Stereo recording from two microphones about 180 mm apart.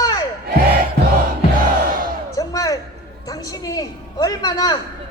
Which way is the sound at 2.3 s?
20° left (ahead or behind).